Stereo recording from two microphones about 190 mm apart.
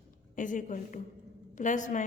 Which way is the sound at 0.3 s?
40° left (ahead or behind).